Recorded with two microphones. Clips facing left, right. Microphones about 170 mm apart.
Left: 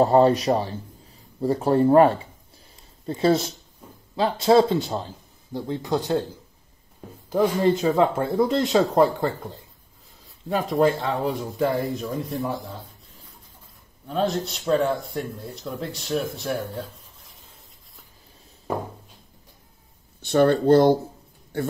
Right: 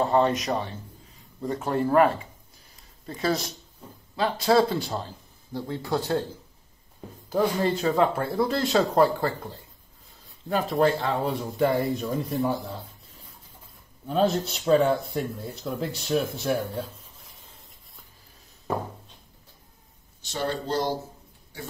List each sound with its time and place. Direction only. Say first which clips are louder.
0.0 s speech: left 6 dB; 35° left (ahead or behind)
2.7 s a sound: left 8 dB; 25° left (ahead or behind)
4.2 s a man's voice: left 4 dB; 25° left (ahead or behind)
7.7 s a man's voice: left 3 dB; 20° left (ahead or behind)
10.5 s speech: left 2 dB; centre (ahead or behind)
14.0 s speech: right 1 dB; centre (ahead or behind)
20.2 s a man's voice: left 11 dB; 55° left (ahead or behind)